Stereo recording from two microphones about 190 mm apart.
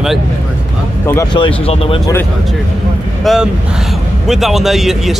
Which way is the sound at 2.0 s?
15° left (ahead or behind).